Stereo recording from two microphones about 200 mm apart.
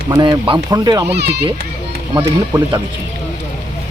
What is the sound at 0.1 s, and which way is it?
Speech, 25° right (ahead or behind).